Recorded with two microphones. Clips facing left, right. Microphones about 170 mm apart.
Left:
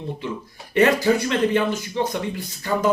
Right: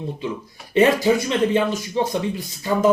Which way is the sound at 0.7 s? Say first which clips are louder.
Right 1 dB; 20° right (ahead or behind).